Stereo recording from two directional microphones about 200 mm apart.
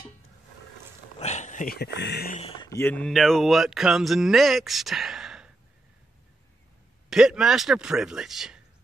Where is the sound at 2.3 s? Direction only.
30° left (ahead or behind).